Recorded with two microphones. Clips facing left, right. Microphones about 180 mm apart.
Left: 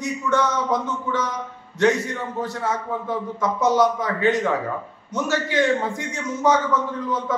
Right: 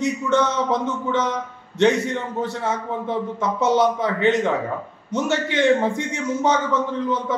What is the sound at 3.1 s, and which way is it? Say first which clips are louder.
A man's voice: right 1 dB; 25° right (ahead or behind).